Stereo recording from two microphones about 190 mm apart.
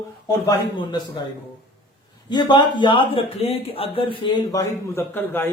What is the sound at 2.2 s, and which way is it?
Speech, 20° left (ahead or behind).